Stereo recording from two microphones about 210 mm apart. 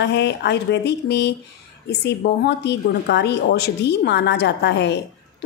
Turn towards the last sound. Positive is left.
turn(degrees=55)  # may be behind; listen again after turning